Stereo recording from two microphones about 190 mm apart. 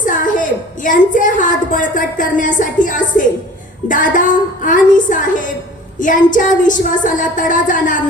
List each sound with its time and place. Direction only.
0.0 s a woman's voice: 45° left (ahead or behind)
3.8 s a sound: 45° left (ahead or behind)
6.0 s speech: 45° left (ahead or behind)